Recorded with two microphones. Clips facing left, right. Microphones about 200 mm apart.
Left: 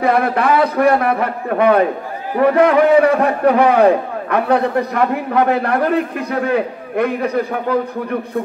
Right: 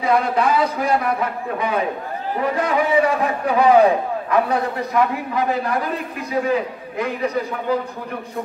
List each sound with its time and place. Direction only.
0.0 s a man's voice: 60° left (ahead or behind)